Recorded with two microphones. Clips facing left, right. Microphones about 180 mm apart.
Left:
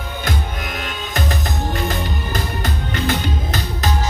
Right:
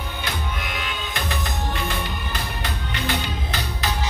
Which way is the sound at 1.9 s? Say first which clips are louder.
Left 5 dB; 45° left (ahead or behind).